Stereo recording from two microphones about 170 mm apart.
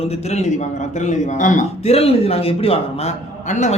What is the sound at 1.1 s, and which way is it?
A man's voice, 45° left (ahead or behind).